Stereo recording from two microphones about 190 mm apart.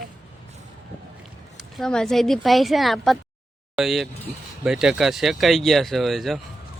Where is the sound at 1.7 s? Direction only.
5° left (ahead or behind).